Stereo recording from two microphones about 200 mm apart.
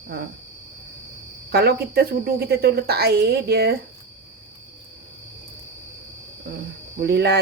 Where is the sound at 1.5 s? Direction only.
55° right (ahead or behind).